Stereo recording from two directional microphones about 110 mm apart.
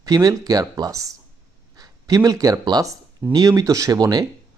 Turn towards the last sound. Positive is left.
turn(degrees=-35)  # may be behind; listen again after turning